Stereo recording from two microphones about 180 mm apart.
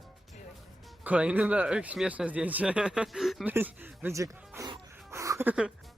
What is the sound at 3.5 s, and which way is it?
Speech, 10° right (ahead or behind).